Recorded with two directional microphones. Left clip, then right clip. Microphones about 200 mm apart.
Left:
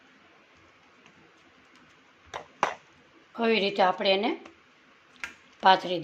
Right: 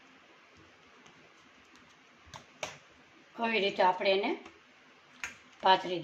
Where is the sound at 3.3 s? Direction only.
55° left (ahead or behind).